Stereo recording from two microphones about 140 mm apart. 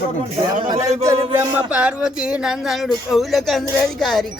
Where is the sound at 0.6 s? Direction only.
30° right (ahead or behind).